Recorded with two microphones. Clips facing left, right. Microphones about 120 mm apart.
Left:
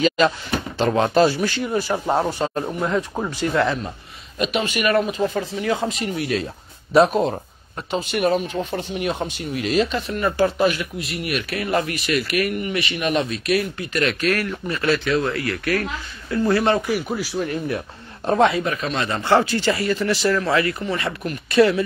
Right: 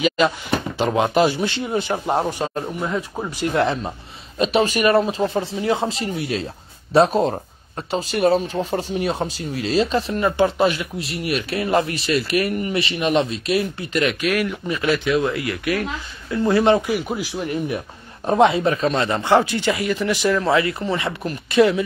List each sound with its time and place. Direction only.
0.7 s speech: 15° right (ahead or behind)
2.8 s speech: centre (ahead or behind)
3.3 s speech: 15° right (ahead or behind)
4.4 s speech: 35° right (ahead or behind)
10.2 s speech: 20° right (ahead or behind)
14.0 s speech: 10° right (ahead or behind)
18.5 s speech: 30° right (ahead or behind)
19.0 s speech: 20° right (ahead or behind)
20.4 s speech: 25° right (ahead or behind)